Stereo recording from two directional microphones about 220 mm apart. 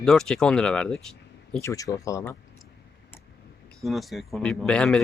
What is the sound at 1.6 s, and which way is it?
Speech, 15° left (ahead or behind).